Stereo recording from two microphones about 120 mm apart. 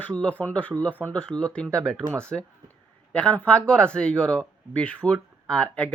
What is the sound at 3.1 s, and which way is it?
Speech, 10° left (ahead or behind).